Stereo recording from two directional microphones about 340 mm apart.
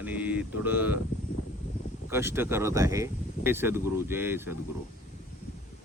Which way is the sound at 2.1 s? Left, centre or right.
Centre.